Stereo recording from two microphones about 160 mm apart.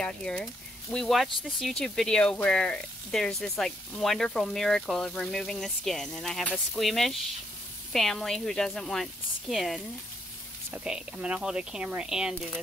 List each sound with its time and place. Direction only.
0.0 s speech: 5° left (ahead or behind)